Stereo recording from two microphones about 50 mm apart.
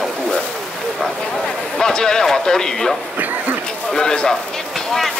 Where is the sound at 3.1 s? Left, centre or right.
Right.